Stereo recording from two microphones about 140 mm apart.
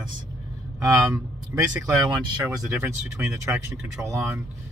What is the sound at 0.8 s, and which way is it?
Speech, 20° right (ahead or behind).